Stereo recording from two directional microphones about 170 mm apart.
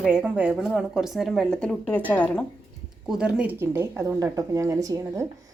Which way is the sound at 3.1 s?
5° right (ahead or behind).